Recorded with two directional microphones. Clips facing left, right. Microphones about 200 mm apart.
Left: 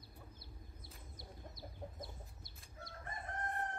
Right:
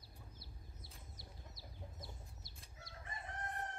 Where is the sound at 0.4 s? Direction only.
55° left (ahead or behind).